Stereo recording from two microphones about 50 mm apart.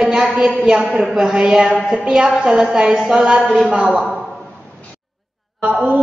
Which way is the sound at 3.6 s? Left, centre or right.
Right.